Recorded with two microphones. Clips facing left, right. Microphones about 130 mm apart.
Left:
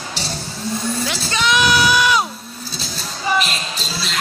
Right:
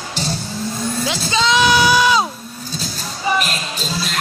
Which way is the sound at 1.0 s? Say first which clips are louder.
Right 3 dB; 20° right (ahead or behind).